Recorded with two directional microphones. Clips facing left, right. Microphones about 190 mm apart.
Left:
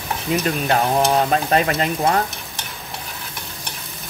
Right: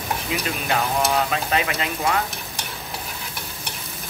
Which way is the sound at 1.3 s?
40° left (ahead or behind).